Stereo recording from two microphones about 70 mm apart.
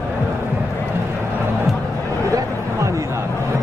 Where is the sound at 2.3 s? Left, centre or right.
Right.